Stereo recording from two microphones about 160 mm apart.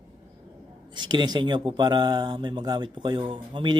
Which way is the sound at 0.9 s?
30° right (ahead or behind).